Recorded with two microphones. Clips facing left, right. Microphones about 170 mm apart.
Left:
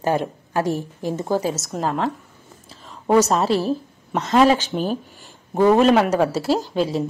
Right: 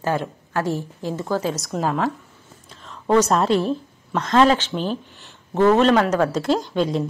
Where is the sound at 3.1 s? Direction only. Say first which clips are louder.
Even; 5° left (ahead or behind).